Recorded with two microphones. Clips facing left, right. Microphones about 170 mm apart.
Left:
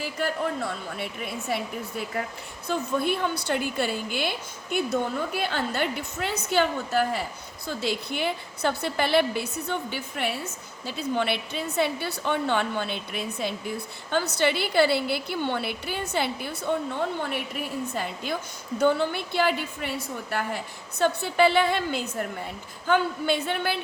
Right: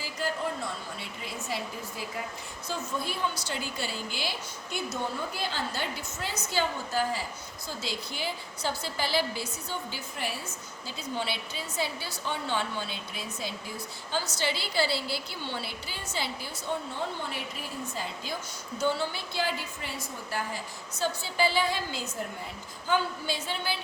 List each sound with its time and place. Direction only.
0.0 s a woman's voice: 60° left (ahead or behind)